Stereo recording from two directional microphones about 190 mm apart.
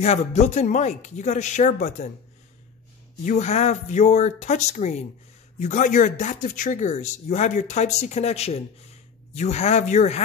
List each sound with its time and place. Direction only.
0.0 s speech: 35° left (ahead or behind)
3.3 s speech: 35° left (ahead or behind)